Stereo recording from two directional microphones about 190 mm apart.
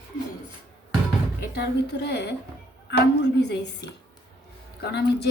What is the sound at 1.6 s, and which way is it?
A woman's voice, 60° left (ahead or behind).